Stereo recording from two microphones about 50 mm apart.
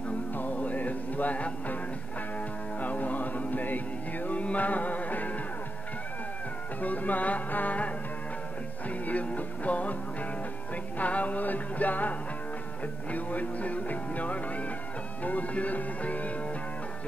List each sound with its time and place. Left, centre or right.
0.4 s music: left
2.8 s music: left
6.8 s music: left
11.0 s music: left